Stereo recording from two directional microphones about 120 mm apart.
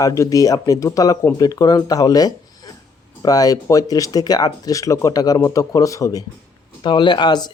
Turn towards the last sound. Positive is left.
turn(degrees=40)  # may be behind; listen again after turning